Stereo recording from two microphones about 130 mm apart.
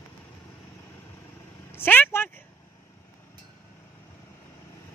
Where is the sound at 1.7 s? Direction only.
15° left (ahead or behind).